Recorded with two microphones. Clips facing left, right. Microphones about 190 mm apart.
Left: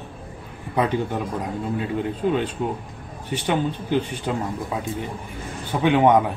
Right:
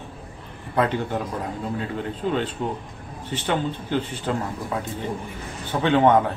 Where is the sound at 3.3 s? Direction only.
15° left (ahead or behind).